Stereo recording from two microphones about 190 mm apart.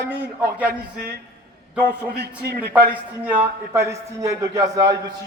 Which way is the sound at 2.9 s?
10° right (ahead or behind).